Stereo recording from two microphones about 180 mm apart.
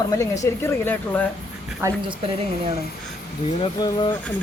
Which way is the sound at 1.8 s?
25° right (ahead or behind).